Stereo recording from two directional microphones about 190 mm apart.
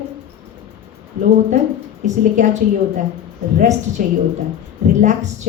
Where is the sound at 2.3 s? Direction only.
40° right (ahead or behind).